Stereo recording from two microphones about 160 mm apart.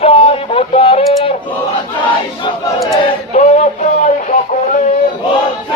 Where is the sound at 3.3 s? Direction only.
45° left (ahead or behind).